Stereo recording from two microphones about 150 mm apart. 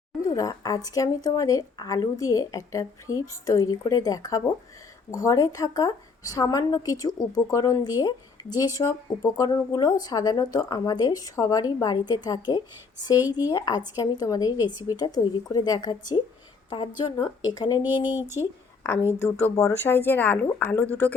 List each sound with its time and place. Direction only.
0.3 s a woman's voice: 25° left (ahead or behind)
17.8 s speech: 10° right (ahead or behind)
19.2 s a woman's voice: 15° left (ahead or behind)